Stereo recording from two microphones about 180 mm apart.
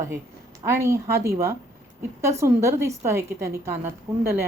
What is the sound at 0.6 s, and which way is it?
A woman's voice, 15° right (ahead or behind).